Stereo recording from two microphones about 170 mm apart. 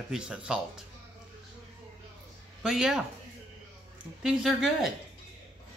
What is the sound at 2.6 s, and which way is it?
Speech, 5° right (ahead or behind).